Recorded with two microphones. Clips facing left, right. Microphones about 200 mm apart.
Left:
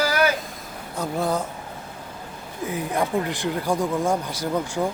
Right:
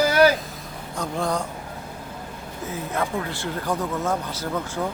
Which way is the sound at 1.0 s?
5° left (ahead or behind).